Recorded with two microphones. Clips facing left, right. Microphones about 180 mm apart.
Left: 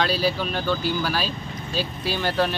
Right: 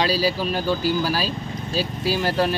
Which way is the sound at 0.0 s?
5° right (ahead or behind).